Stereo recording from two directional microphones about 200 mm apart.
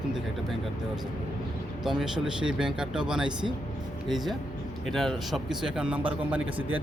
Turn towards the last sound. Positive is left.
turn(degrees=-5)  # may be behind; listen again after turning